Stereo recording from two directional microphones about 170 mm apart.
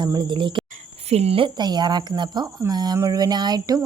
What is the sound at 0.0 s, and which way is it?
Speech, 25° right (ahead or behind).